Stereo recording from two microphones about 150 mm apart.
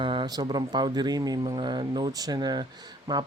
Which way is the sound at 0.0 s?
35° right (ahead or behind).